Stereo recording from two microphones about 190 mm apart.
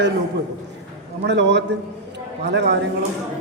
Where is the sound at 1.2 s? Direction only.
65° right (ahead or behind).